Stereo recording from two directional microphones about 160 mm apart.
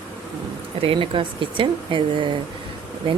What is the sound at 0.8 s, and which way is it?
Speech, 35° right (ahead or behind).